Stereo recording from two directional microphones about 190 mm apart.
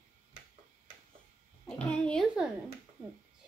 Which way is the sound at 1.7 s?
5° left (ahead or behind).